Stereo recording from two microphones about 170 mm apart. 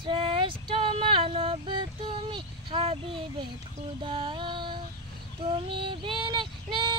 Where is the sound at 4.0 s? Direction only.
30° right (ahead or behind).